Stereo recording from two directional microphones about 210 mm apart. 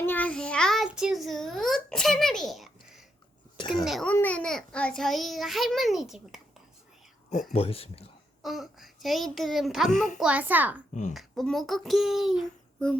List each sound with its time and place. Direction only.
0.0 s child singing: 10° left (ahead or behind)
3.8 s a child's voice: 5° left (ahead or behind)
7.5 s speech: 30° left (ahead or behind)
8.4 s a child's voice: centre (ahead or behind)